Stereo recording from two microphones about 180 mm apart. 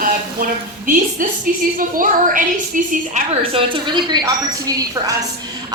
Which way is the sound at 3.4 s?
30° right (ahead or behind).